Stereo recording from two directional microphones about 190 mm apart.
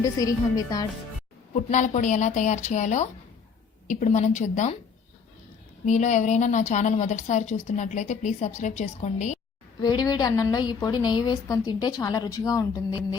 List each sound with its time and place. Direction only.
0.0 s a woman's voice: 20° left (ahead or behind)
1.5 s a woman's voice: 40° left (ahead or behind)
5.8 s a woman's voice: 40° left (ahead or behind)
9.8 s a woman's voice: 20° left (ahead or behind)